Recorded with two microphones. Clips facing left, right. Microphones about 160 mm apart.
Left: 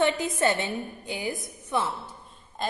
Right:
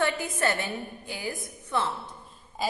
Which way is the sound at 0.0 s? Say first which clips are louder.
Left 3 dB; 20° left (ahead or behind).